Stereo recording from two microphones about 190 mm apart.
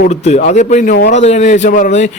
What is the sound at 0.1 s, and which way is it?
A man's voice, 35° left (ahead or behind).